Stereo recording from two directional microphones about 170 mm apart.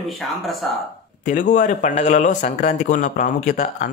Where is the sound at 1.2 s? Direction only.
50° left (ahead or behind).